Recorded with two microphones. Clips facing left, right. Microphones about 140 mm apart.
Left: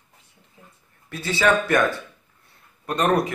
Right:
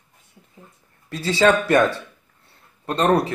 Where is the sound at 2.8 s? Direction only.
30° right (ahead or behind).